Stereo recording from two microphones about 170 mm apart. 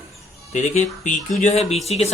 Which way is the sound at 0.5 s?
45° left (ahead or behind).